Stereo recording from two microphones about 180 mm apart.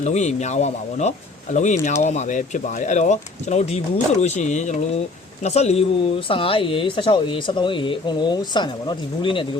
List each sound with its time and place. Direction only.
0.0 s speech: 40° left (ahead or behind)